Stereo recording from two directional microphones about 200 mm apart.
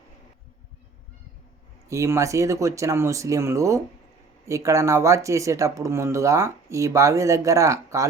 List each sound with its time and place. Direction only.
1.9 s speech: 15° right (ahead or behind)